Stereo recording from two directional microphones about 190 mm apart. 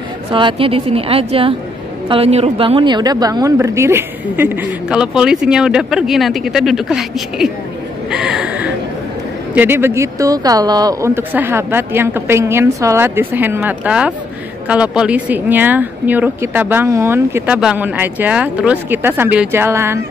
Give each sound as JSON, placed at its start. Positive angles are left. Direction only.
{"t": 0.3, "sound": "a woman's voice", "side_deg": -25}
{"t": 8.1, "sound": "gasp", "side_deg": -5}
{"t": 9.5, "sound": "speech", "side_deg": -10}